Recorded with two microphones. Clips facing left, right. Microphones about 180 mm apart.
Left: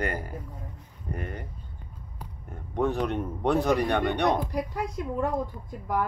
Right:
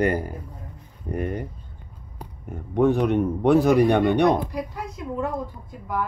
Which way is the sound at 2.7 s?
Centre (ahead or behind).